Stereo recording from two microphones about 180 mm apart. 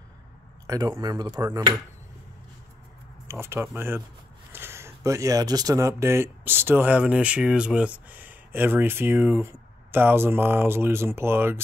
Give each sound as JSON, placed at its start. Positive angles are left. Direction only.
{"t": 0.7, "sound": "speech", "side_deg": -20}
{"t": 3.3, "sound": "speech", "side_deg": -15}